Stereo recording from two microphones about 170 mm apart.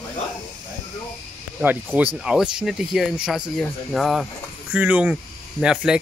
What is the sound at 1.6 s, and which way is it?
Speech, 10° right (ahead or behind).